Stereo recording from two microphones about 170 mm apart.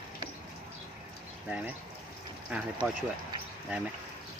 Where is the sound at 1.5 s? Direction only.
10° right (ahead or behind).